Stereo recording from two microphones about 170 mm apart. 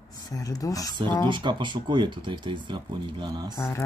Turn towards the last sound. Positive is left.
turn(degrees=-25)  # may be behind; listen again after turning